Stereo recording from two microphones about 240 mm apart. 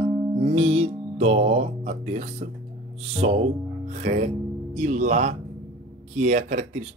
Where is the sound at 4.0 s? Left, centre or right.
Right.